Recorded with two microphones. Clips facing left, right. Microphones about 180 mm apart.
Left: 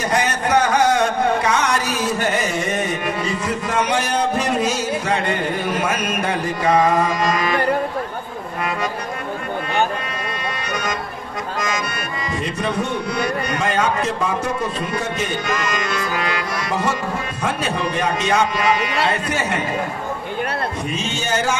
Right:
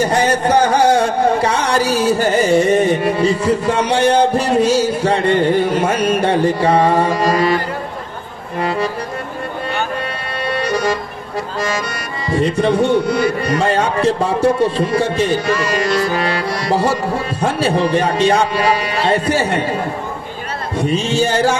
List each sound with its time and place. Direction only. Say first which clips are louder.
0.0 s speech: right 6 dB; 30° right (ahead or behind)
8.6 s music: right 5 dB; 30° right (ahead or behind)
10.7 s music: right 7 dB; 30° right (ahead or behind)
12.3 s speech: right 10 dB; 30° right (ahead or behind)
20.8 s speech: right 9 dB; 35° right (ahead or behind)